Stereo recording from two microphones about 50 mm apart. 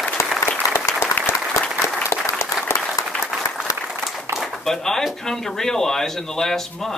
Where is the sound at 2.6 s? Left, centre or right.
Centre.